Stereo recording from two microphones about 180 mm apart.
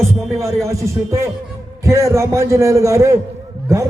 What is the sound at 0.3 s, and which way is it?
A man's voice, 15° right (ahead or behind).